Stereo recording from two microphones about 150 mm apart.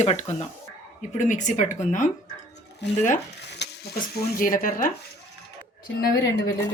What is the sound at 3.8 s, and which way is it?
Speech, 80° left.